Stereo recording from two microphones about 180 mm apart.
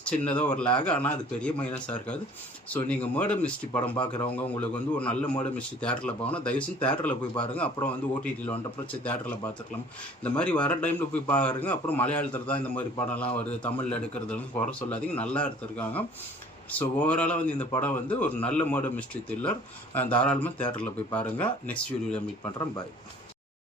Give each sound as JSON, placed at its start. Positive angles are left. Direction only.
{"t": 0.0, "sound": "speech", "side_deg": 10}
{"t": 3.7, "sound": "speech", "side_deg": 25}
{"t": 4.5, "sound": "speech", "side_deg": 10}